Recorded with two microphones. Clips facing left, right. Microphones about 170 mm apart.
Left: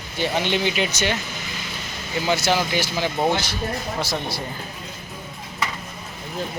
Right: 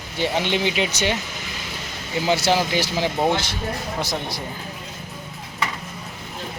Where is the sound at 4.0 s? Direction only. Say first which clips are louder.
Even; 15° right (ahead or behind).